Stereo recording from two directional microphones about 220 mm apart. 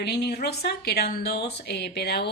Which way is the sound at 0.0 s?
50° left (ahead or behind).